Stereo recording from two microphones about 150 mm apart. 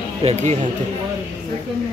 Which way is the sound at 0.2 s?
45° right (ahead or behind).